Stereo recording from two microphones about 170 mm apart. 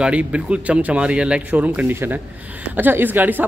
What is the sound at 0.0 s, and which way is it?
Speech, 5° right (ahead or behind).